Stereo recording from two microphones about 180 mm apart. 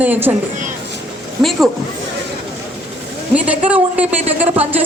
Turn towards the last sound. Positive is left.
turn(degrees=-35)  # may be behind; listen again after turning